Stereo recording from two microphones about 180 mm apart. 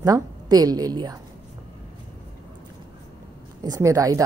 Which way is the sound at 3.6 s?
20° right (ahead or behind).